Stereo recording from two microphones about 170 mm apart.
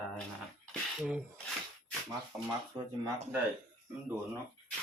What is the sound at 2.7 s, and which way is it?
Speech, 25° right (ahead or behind).